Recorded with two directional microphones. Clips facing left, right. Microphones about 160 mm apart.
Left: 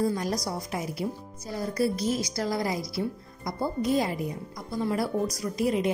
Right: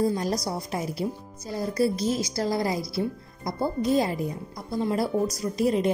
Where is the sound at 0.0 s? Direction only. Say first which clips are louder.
Right 2 dB; 25° right (ahead or behind).